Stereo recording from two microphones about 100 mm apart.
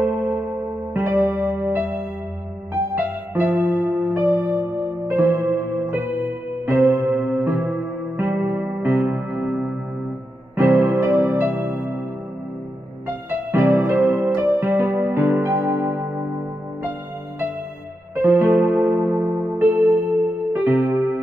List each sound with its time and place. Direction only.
0.0 s music: 25° right (ahead or behind)
3.5 s music: 20° right (ahead or behind)
4.4 s music: 30° right (ahead or behind)
13.3 s music: 25° right (ahead or behind)
18.1 s keyboard: 25° right (ahead or behind)